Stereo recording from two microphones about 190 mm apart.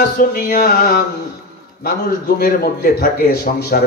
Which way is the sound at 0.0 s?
45° left (ahead or behind).